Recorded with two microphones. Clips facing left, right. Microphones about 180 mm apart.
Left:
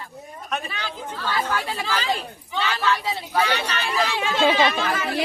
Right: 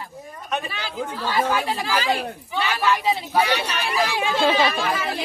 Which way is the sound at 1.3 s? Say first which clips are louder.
Right 3 dB; 10° right (ahead or behind).